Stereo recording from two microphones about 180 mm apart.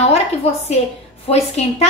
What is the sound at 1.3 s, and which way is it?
Speech, 35° left (ahead or behind).